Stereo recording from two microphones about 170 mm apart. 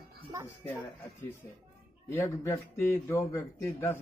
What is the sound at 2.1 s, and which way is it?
Speech, 15° left (ahead or behind).